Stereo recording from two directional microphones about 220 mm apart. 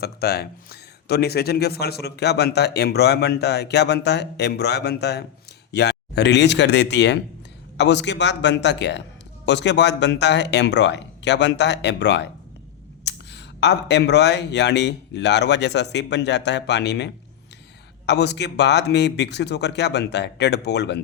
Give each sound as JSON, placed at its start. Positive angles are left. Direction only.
{"t": 0.0, "sound": "speech", "side_deg": 45}